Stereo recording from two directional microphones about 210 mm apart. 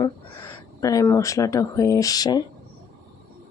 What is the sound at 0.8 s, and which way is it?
Speech, 15° left (ahead or behind).